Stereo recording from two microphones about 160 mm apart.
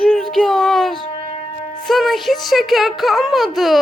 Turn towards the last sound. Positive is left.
turn(degrees=0)  # may be behind; listen again after turning